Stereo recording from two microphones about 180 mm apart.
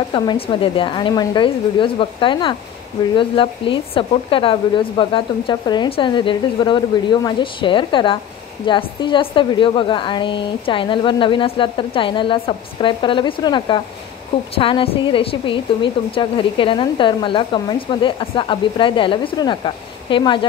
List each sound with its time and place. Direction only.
0.1 s a woman's voice: 30° left (ahead or behind)